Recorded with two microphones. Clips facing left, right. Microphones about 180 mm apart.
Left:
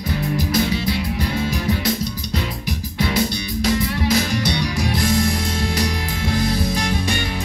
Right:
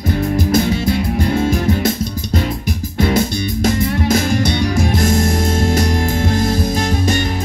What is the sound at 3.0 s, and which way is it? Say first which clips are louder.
Music: right 5 dB; 45° right (ahead or behind).